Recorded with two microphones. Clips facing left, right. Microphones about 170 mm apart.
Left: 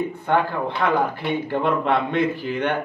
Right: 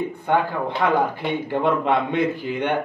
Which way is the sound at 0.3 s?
15° right (ahead or behind).